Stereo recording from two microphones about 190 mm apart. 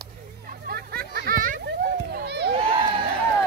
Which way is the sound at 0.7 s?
55° right (ahead or behind).